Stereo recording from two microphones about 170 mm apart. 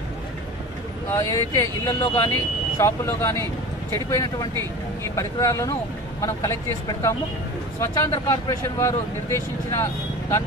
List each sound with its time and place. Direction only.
1.1 s speech: 15° left (ahead or behind)